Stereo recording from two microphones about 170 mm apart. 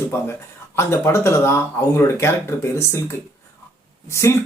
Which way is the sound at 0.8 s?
15° left (ahead or behind).